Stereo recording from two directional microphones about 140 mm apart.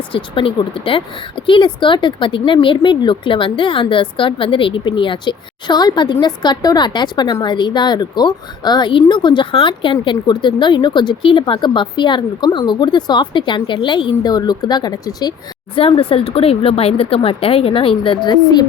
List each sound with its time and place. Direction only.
0.1 s speech: 40° left (ahead or behind)
15.7 s speech: 40° left (ahead or behind)